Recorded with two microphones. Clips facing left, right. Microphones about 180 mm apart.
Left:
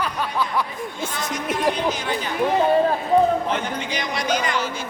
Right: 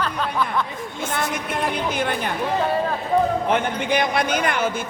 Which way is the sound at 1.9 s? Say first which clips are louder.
Right 2 dB; 55° right (ahead or behind).